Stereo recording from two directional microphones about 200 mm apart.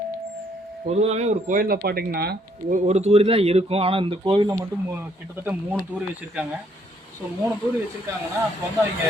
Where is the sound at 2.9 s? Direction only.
30° right (ahead or behind).